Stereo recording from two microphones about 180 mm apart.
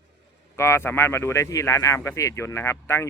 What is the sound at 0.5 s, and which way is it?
Speech, 15° left (ahead or behind).